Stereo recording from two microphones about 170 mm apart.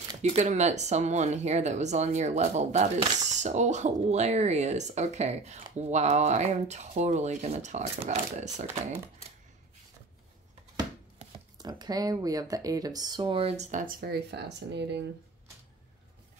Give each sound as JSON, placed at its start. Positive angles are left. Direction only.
{"t": 0.2, "sound": "speech", "side_deg": -40}
{"t": 11.5, "sound": "speech", "side_deg": -25}
{"t": 14.0, "sound": "speech", "side_deg": -75}